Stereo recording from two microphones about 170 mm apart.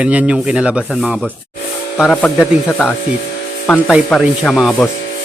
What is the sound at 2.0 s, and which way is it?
Speech, 5° left (ahead or behind).